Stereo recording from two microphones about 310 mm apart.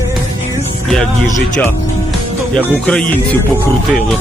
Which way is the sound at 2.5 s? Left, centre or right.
Centre.